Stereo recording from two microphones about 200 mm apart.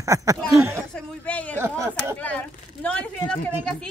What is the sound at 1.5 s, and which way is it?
Speech, 15° right (ahead or behind).